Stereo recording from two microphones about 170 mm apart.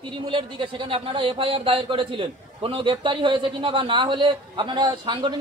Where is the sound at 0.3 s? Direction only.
30° right (ahead or behind).